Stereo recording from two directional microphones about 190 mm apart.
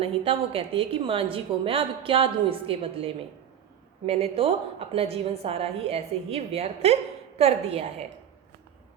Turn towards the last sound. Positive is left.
turn(degrees=-35)  # may be behind; listen again after turning